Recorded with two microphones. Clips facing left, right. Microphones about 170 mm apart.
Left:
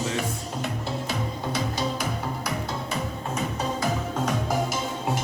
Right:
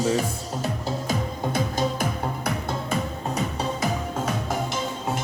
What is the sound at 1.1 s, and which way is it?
Music, 50° right (ahead or behind).